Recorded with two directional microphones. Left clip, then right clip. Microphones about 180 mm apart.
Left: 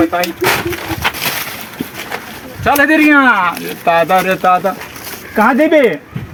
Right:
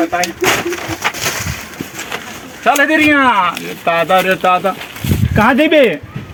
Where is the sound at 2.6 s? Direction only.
5° right (ahead or behind).